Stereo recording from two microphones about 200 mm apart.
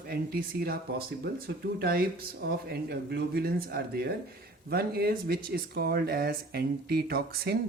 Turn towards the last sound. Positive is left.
turn(degrees=-50)  # may be behind; listen again after turning